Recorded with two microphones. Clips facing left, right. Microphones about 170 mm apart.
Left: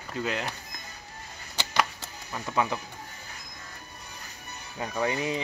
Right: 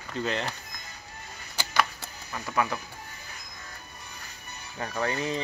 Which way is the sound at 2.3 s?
15° left (ahead or behind).